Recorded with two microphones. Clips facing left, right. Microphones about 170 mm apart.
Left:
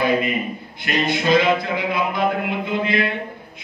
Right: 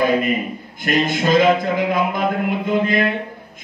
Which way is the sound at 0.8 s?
45° right (ahead or behind).